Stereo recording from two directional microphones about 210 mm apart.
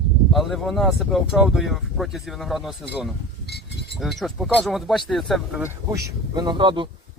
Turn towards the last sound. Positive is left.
turn(degrees=-25)  # may be behind; listen again after turning